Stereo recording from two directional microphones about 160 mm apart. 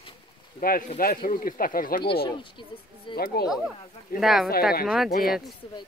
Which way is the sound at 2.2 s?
30° left (ahead or behind).